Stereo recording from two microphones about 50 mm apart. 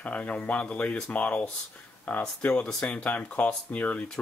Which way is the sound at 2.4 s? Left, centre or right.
Left.